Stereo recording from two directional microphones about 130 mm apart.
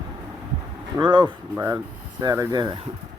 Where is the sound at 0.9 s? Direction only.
35° right (ahead or behind).